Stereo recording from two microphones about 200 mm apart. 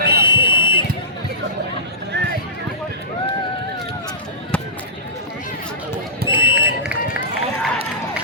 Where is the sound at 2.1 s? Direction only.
60° right (ahead or behind).